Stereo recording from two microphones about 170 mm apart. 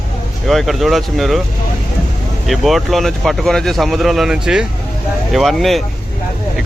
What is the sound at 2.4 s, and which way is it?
Speech, centre (ahead or behind).